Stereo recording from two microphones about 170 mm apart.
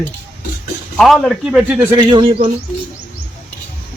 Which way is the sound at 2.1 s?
30° right (ahead or behind).